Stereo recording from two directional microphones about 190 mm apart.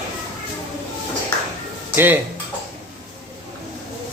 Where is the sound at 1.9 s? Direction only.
10° right (ahead or behind).